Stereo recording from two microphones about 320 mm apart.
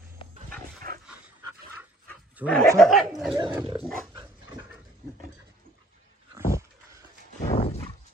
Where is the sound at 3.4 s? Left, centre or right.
Centre.